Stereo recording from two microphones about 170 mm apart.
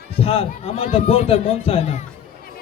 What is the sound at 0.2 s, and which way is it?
Speech, 35° left (ahead or behind).